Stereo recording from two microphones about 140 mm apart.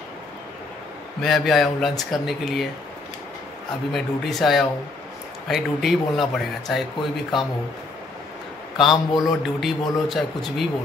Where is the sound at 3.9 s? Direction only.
Centre (ahead or behind).